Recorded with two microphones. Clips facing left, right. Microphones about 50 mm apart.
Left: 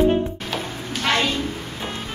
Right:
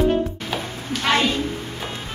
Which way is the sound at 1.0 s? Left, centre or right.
Centre.